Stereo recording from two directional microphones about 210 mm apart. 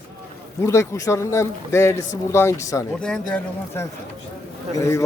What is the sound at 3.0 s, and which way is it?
Speech, 5° left (ahead or behind).